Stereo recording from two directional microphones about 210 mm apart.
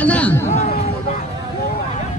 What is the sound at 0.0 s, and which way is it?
Chatter, 5° left (ahead or behind).